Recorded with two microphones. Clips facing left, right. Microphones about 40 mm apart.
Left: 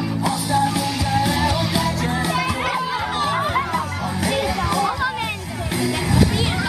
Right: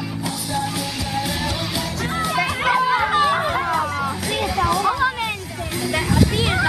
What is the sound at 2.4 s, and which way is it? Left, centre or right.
Music, centre.